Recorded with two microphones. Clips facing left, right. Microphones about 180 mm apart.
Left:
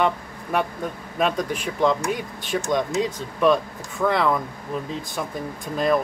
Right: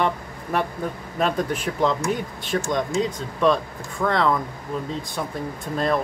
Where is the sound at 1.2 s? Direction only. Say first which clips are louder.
Even; centre (ahead or behind).